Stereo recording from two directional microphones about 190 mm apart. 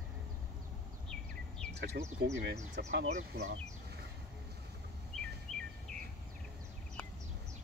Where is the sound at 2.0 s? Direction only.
60° right (ahead or behind).